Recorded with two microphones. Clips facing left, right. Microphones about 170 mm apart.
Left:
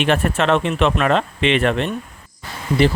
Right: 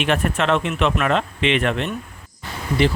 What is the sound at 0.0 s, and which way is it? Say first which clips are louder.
Speech: left 3 dB; 35° left (ahead or behind).